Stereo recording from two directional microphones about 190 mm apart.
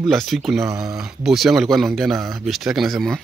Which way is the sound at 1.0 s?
Centre (ahead or behind).